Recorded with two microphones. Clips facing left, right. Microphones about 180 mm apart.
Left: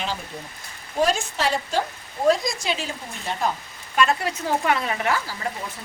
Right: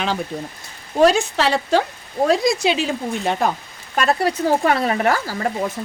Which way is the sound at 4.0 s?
35° right (ahead or behind).